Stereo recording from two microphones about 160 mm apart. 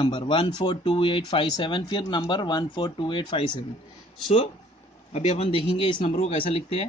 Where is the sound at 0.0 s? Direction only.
30° left (ahead or behind).